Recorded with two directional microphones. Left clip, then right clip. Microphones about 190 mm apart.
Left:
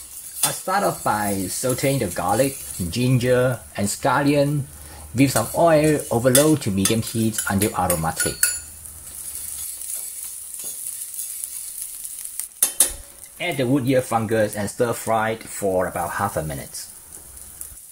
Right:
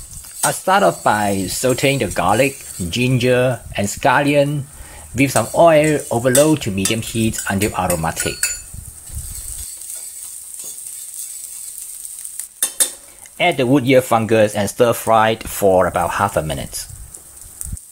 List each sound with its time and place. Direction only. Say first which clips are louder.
0.4 s speech: right 7 dB; 15° right (ahead or behind)
3.3 s cutlery: right 3 dB; 5° right (ahead or behind)
5.1 s speech: right 3 dB; centre (ahead or behind)
5.4 s speech: right 8 dB; 15° right (ahead or behind)
5.7 s cutlery: right 4 dB; centre (ahead or behind)
13.4 s speech: right 7 dB; 25° right (ahead or behind)